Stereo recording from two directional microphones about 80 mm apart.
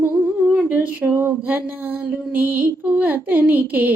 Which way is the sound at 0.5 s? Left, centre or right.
Right.